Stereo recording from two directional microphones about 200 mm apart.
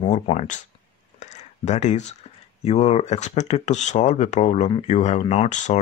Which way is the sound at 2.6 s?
30° left (ahead or behind).